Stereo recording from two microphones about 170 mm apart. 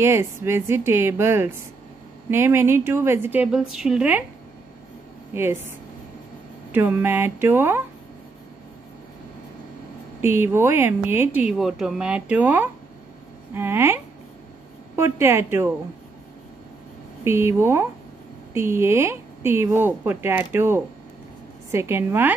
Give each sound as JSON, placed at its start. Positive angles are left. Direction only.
{"t": 0.0, "sound": "speech", "side_deg": -15}
{"t": 5.3, "sound": "speech", "side_deg": -15}
{"t": 10.2, "sound": "speech", "side_deg": -15}
{"t": 17.2, "sound": "speech", "side_deg": -15}